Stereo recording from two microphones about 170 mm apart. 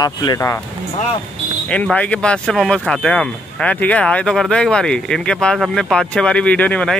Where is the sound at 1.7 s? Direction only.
5° left (ahead or behind).